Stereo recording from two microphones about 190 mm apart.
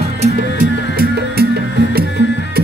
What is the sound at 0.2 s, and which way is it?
Music, 50° right (ahead or behind).